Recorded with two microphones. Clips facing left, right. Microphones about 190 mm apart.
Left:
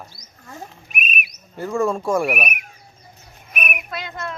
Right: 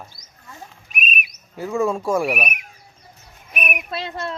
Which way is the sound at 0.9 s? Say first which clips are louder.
Right 2 dB; 55° left (ahead or behind).